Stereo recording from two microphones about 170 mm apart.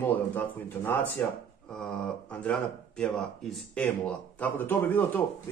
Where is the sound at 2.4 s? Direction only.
5° left (ahead or behind).